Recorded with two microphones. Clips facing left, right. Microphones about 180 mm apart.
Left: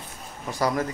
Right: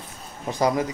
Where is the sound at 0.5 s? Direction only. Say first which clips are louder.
Right 3 dB; 20° right (ahead or behind).